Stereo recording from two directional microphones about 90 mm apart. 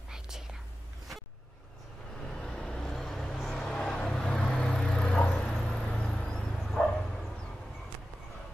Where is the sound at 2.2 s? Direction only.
10° left (ahead or behind).